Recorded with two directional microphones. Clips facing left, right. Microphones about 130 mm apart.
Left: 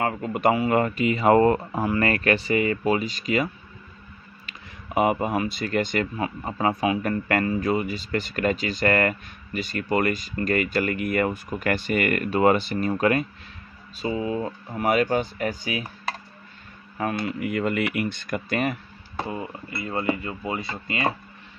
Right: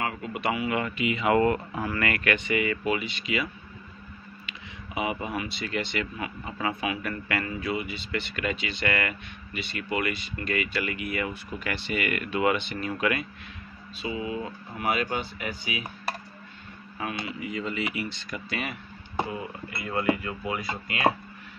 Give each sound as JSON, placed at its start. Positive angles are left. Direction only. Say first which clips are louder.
{"t": 0.0, "sound": "speech", "louder": "left 7 dB", "side_deg": 45}
{"t": 4.5, "sound": "speech", "louder": "left 4 dB", "side_deg": 50}
{"t": 17.0, "sound": "speech", "louder": "left 7 dB", "side_deg": 50}
{"t": 19.8, "sound": "speech", "louder": "even", "side_deg": 30}